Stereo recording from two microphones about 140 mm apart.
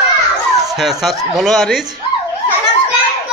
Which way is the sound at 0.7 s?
Centre (ahead or behind).